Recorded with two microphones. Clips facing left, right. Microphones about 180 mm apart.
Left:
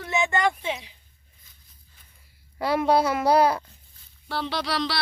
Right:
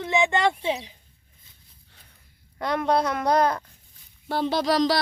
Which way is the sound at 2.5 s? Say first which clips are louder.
Left 2 dB; 5° left (ahead or behind).